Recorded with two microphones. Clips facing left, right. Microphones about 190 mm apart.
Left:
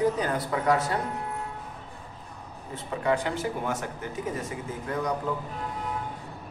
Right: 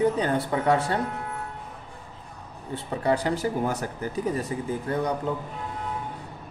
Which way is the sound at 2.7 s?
35° right (ahead or behind).